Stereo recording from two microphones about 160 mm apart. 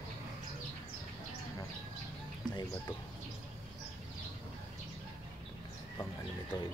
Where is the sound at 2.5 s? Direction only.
25° left (ahead or behind).